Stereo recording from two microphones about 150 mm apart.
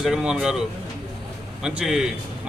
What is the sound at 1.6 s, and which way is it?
Speech, 5° right (ahead or behind).